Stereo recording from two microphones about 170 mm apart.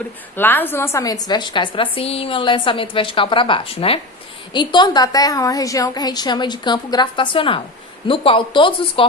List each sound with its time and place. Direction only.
0.3 s a woman's voice: 10° left (ahead or behind); by 9.0 s 30° left (ahead or behind)